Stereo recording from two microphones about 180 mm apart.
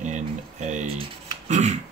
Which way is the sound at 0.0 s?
40° right (ahead or behind).